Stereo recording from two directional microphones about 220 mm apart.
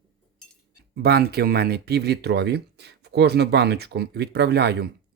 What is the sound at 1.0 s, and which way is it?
Speech, 45° right (ahead or behind).